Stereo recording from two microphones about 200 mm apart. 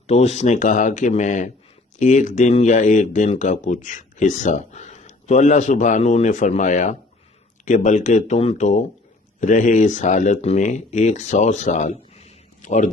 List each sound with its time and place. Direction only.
0.1 s a man's voice: 35° left (ahead or behind)